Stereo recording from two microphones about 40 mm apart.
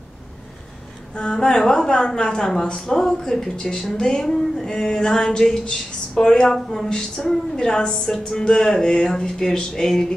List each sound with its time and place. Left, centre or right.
1.3 s a woman's voice: centre